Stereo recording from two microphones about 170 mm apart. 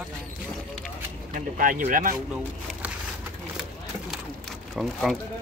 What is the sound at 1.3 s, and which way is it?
Speech, 50° right (ahead or behind).